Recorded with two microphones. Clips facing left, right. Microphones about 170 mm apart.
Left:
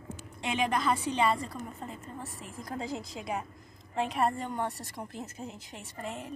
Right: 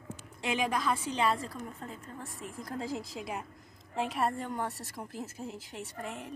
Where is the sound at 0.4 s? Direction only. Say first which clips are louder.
Left 1 dB; centre (ahead or behind).